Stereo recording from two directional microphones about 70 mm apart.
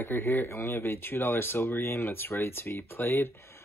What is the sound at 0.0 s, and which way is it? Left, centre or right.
Speech, left.